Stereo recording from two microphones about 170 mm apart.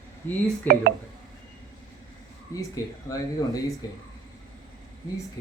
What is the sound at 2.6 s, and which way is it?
Speech, 20° left (ahead or behind).